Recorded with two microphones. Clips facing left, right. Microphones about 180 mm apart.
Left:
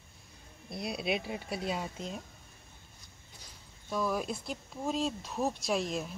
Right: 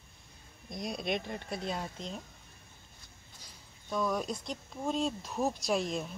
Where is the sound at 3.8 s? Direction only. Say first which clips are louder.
Even; 5° left (ahead or behind).